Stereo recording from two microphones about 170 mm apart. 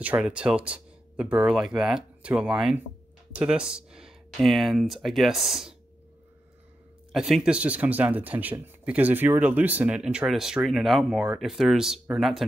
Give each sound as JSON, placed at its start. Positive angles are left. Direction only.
{"t": 0.0, "sound": "speech", "side_deg": -10}
{"t": 7.1, "sound": "speech", "side_deg": -5}